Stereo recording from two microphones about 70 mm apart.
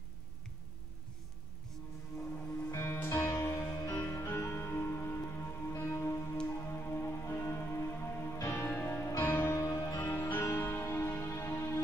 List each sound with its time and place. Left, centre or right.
2.7 s music: left
9.6 s music: left